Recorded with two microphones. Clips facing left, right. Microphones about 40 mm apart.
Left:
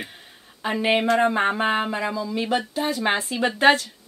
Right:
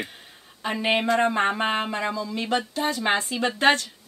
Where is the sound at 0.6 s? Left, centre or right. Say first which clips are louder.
Left 2 dB; centre.